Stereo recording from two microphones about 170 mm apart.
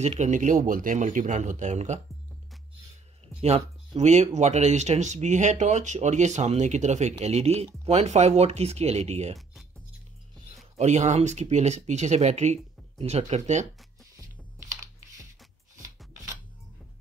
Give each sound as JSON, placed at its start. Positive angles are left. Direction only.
{"t": 0.0, "sound": "speech", "side_deg": -40}
{"t": 3.3, "sound": "speech", "side_deg": -40}
{"t": 10.8, "sound": "speech", "side_deg": -45}